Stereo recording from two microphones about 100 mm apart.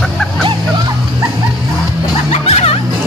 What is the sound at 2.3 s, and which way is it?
Music, 90° left.